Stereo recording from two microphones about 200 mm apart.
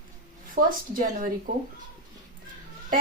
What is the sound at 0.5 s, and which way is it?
Speech, 45° right (ahead or behind).